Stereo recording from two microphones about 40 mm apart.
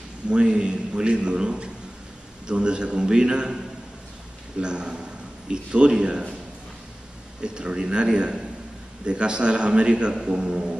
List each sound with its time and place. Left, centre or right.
0.3 s a man's voice: right
7.4 s a man's voice: right